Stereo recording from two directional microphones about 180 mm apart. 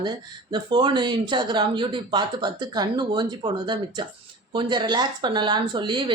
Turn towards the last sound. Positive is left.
turn(degrees=-25)  # may be behind; listen again after turning